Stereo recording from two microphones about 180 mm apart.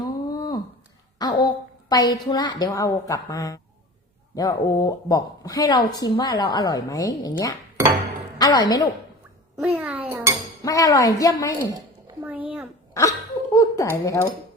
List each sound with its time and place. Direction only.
0.0 s a sound: 25° left (ahead or behind)
1.2 s a woman's voice: 25° left (ahead or behind)
7.8 s chink: 15° right (ahead or behind)
8.4 s a woman's voice: 20° left (ahead or behind)
9.6 s a child's voice: 10° right (ahead or behind)
10.6 s a woman's voice: 20° left (ahead or behind)
12.2 s a sound: 10° right (ahead or behind)
12.9 s laughter: 20° left (ahead or behind)
13.9 s speech: 15° left (ahead or behind)